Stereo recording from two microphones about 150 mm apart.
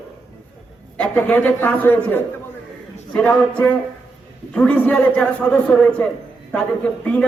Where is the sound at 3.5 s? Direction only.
10° left (ahead or behind).